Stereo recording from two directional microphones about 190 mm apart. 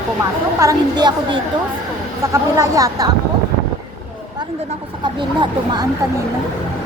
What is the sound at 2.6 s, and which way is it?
Speech, 15° right (ahead or behind).